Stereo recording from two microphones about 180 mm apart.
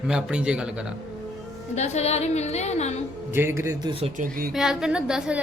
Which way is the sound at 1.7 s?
40° left (ahead or behind).